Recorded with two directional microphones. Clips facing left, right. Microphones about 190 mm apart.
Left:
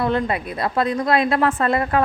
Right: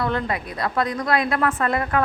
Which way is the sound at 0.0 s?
25° left (ahead or behind).